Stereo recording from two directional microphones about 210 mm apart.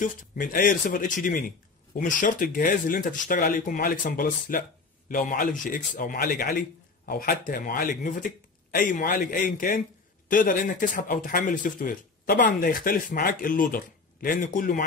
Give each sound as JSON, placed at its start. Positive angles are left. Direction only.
{"t": 0.0, "sound": "speech", "side_deg": 40}